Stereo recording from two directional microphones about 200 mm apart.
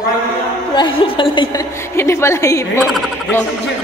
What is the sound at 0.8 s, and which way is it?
A woman's voice, 25° left (ahead or behind).